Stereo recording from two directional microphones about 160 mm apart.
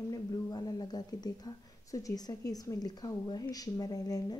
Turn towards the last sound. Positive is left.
turn(degrees=25)  # may be behind; listen again after turning